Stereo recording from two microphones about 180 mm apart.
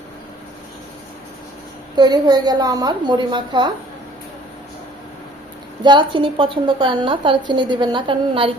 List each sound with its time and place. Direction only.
2.0 s a woman's voice: 25° right (ahead or behind)
5.8 s a woman's voice: 25° right (ahead or behind)